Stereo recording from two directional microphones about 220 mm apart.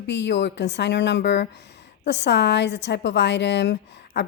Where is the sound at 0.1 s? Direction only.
50° left (ahead or behind).